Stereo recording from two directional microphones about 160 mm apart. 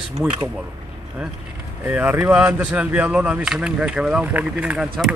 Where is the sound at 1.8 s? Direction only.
10° right (ahead or behind).